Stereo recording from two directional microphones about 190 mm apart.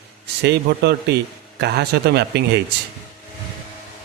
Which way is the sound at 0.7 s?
65° right (ahead or behind).